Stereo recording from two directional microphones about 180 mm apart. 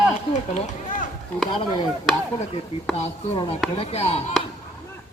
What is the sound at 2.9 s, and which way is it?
Speech, 30° left (ahead or behind).